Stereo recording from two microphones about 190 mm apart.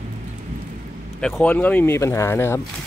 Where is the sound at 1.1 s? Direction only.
5° left (ahead or behind).